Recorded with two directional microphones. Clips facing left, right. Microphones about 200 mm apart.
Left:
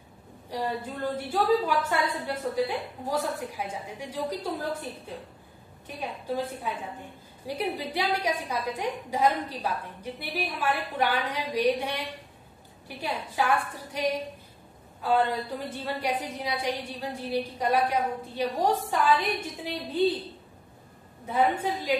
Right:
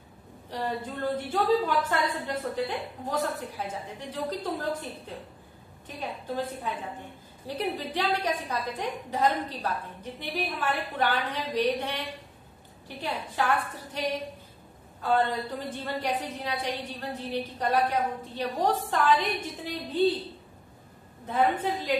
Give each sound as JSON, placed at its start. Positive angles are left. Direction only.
{"t": 0.5, "sound": "a woman's voice", "side_deg": 10}
{"t": 5.9, "sound": "a woman's voice", "side_deg": 10}
{"t": 21.3, "sound": "a woman's voice", "side_deg": 10}